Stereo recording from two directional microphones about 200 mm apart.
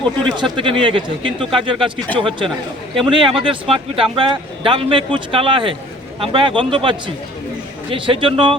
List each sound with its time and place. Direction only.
0.5 s speech: 25° right (ahead or behind)